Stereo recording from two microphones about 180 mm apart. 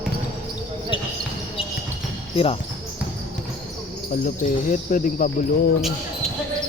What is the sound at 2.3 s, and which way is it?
Speech, 30° left (ahead or behind).